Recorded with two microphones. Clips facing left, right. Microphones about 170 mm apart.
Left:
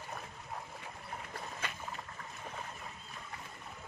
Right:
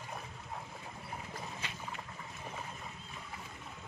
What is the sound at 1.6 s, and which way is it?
Boat, 50° left (ahead or behind).